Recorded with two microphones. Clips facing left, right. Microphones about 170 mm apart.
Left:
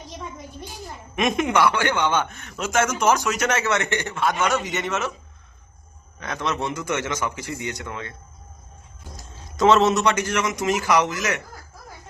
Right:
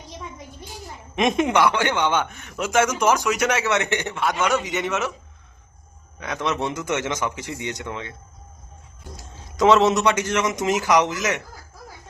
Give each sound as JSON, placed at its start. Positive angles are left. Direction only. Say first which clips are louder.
{"t": 1.1, "sound": "a man's voice", "louder": "right 2 dB", "side_deg": -25}
{"t": 6.1, "sound": "a man's voice", "louder": "right 1 dB", "side_deg": -15}
{"t": 9.6, "sound": "a man's voice", "louder": "right 1 dB", "side_deg": -15}